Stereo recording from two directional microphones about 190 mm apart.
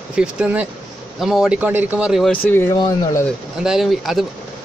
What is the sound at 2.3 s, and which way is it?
Speech, 10° left (ahead or behind).